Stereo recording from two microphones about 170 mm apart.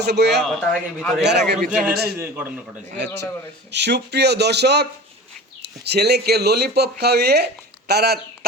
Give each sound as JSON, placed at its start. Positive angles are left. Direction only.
{"t": 0.0, "sound": "speech", "side_deg": -80}
{"t": 0.4, "sound": "speech", "side_deg": 5}
{"t": 1.2, "sound": "speech", "side_deg": -80}
{"t": 2.1, "sound": "a man's voice", "side_deg": -15}
{"t": 3.7, "sound": "speech", "side_deg": -90}